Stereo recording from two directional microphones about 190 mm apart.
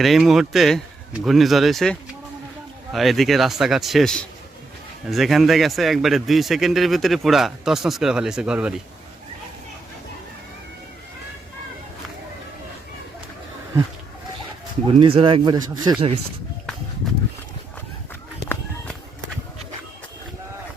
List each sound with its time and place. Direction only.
0.0 s a man's voice: centre (ahead or behind)
14.8 s speech: 30° right (ahead or behind)